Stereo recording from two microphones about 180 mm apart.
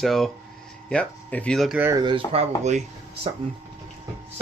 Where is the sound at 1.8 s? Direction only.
15° right (ahead or behind).